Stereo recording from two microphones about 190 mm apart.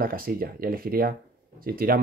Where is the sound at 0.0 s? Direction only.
50° right (ahead or behind).